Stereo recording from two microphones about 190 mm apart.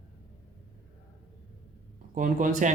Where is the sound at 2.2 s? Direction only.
45° right (ahead or behind).